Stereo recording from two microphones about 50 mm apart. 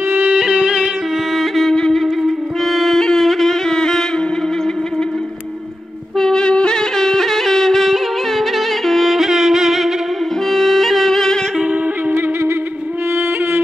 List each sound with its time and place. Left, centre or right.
0.3 s music: right
1.3 s music: centre
1.8 s music: centre
6.1 s music: centre
12.2 s music: right